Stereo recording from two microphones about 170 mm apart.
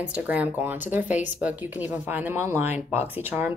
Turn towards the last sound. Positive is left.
turn(degrees=-10)  # may be behind; listen again after turning